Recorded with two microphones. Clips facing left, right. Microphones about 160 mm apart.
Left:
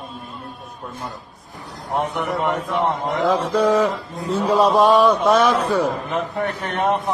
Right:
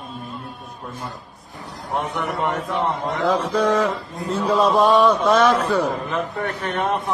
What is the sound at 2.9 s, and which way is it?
A man's voice, centre (ahead or behind).